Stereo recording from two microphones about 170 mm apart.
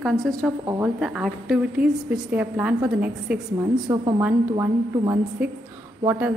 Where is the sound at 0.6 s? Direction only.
10° right (ahead or behind).